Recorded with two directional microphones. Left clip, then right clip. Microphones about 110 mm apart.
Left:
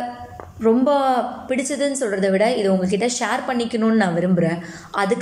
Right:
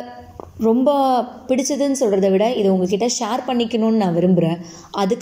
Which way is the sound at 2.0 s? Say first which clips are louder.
Right 3 dB; 25° right (ahead or behind).